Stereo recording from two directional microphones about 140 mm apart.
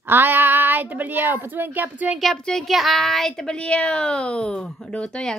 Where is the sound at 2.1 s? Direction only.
5° left (ahead or behind).